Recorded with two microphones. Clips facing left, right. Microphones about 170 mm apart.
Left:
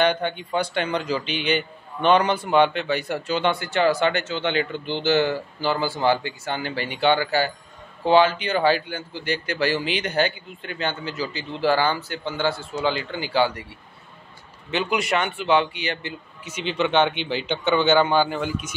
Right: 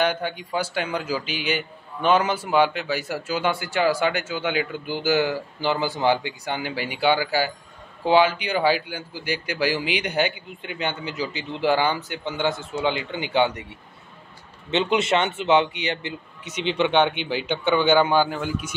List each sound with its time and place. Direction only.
0.0 s speech: 5° right (ahead or behind)
14.7 s a man's voice: 25° right (ahead or behind); by 18.4 s 10° right (ahead or behind)